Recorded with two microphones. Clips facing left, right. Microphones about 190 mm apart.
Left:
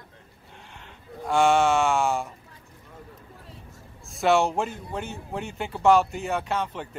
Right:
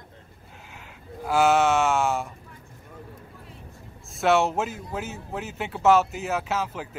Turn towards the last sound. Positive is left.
turn(degrees=-5)  # may be behind; listen again after turning